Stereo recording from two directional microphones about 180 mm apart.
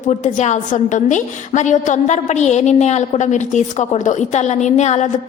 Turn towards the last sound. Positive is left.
turn(degrees=40)  # may be behind; listen again after turning